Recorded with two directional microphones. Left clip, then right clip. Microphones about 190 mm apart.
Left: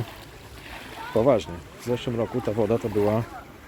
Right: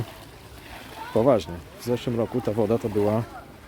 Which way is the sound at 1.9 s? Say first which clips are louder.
Right 1 dB; 30° right (ahead or behind).